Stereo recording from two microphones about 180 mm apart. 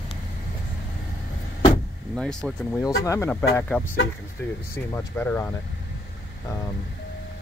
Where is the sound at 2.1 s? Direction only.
5° left (ahead or behind).